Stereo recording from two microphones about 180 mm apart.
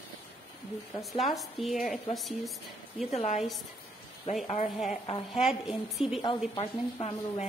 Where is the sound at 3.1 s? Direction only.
40° left (ahead or behind).